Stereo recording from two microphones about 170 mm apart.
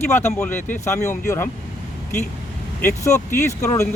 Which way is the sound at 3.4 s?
15° left (ahead or behind).